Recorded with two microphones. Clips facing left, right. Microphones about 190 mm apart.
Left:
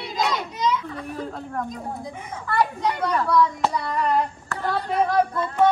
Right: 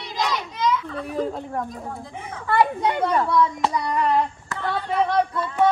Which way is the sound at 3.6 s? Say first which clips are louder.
Right 1 dB; centre (ahead or behind).